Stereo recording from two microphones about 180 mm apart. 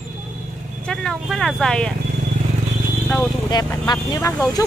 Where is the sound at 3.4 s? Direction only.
20° left (ahead or behind).